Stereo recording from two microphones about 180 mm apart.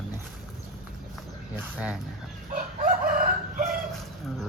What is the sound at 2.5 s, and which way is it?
Chicken, 45° right (ahead or behind).